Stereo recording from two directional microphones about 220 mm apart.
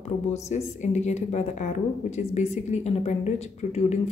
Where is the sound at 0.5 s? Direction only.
30° left (ahead or behind).